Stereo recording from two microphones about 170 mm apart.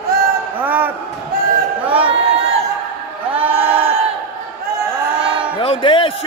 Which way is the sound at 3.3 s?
10° right (ahead or behind).